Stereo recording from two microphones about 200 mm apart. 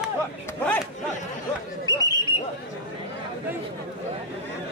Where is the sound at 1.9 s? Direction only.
20° left (ahead or behind).